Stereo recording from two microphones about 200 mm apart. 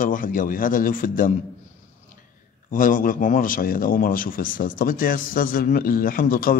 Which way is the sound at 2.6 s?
40° left (ahead or behind).